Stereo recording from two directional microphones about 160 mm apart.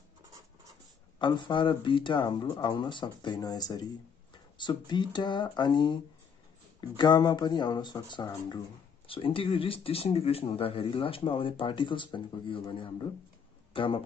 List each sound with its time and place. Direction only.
1.2 s speech: 30° left (ahead or behind)
7.0 s speech: 25° left (ahead or behind)